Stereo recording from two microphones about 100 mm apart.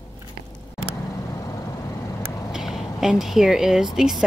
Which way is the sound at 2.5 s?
5° right (ahead or behind).